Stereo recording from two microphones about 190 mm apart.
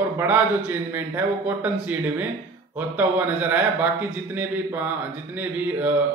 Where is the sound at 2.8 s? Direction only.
10° right (ahead or behind).